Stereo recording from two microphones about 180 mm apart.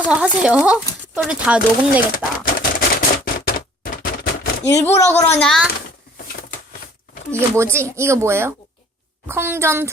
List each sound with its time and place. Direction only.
0.1 s speech: 5° right (ahead or behind)
2.1 s typewriter: 50° left (ahead or behind)
4.6 s speech: 15° left (ahead or behind)
5.4 s a child's voice: centre (ahead or behind)
7.5 s speech: 15° right (ahead or behind)